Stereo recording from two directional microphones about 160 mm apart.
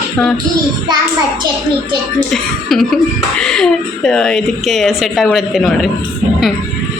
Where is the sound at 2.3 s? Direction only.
Centre (ahead or behind).